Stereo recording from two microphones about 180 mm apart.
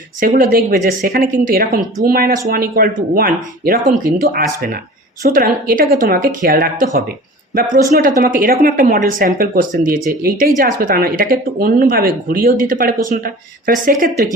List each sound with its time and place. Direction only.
0.2 s speech: 50° right (ahead or behind)